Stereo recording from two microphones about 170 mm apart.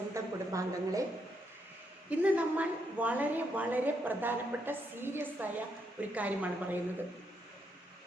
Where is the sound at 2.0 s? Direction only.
10° right (ahead or behind).